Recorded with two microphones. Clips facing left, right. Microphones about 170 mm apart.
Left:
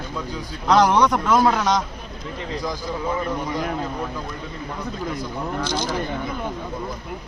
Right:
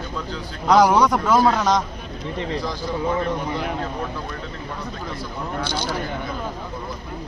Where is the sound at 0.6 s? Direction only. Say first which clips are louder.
Right 1 dB; 5° right (ahead or behind).